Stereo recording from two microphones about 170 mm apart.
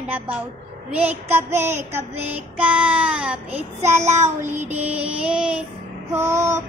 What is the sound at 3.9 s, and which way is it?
Child singing, 45° right (ahead or behind).